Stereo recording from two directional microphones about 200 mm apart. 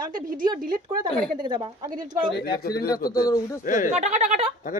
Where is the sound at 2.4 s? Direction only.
55° left (ahead or behind).